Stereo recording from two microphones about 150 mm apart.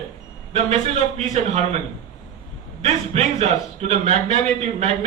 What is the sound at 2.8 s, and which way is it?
A man's voice, 45° right (ahead or behind).